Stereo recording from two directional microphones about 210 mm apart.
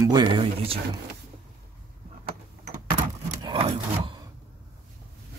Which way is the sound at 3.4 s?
25° right (ahead or behind).